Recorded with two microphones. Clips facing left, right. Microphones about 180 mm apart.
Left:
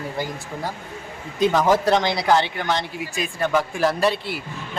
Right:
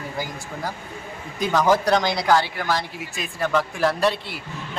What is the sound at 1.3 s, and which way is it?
Speech, 25° left (ahead or behind).